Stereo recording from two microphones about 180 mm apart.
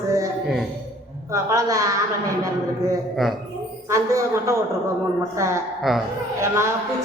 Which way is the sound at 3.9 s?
15° right (ahead or behind).